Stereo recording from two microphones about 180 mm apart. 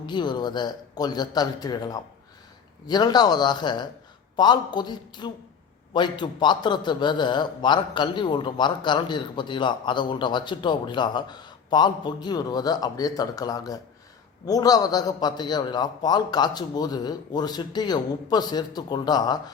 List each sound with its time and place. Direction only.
0.0 s a man's voice: 25° left (ahead or behind)